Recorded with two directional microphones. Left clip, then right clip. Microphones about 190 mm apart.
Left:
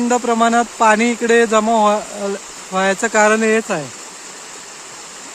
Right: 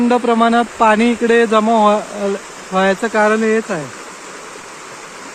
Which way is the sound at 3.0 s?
20° left (ahead or behind).